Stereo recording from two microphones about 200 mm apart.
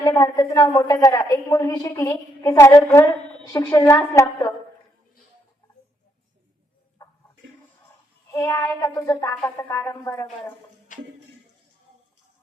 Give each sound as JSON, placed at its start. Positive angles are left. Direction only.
{"t": 0.0, "sound": "a woman's voice", "side_deg": 20}
{"t": 8.3, "sound": "child singing", "side_deg": 15}
{"t": 8.8, "sound": "a woman's voice", "side_deg": 15}
{"t": 10.9, "sound": "music", "side_deg": 40}